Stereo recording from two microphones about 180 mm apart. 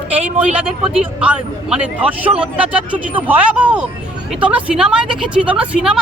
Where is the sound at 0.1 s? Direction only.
10° right (ahead or behind).